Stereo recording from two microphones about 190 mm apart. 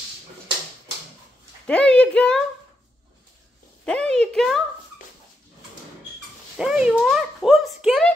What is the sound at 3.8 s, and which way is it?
Speech, 5° left (ahead or behind).